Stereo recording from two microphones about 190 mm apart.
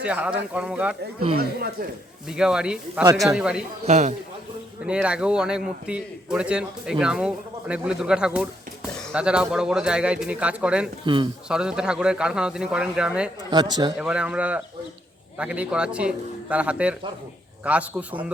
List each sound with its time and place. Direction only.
0.0 s a man's voice: 5° right (ahead or behind)
2.3 s a man's voice: 5° right (ahead or behind)
3.8 s a man's voice: 35° right (ahead or behind)
4.9 s a man's voice: 5° right (ahead or behind)
11.0 s speech: 25° right (ahead or behind)
11.4 s a man's voice: 5° right (ahead or behind)
13.5 s speech: 20° right (ahead or behind)
14.0 s a man's voice: 5° right (ahead or behind)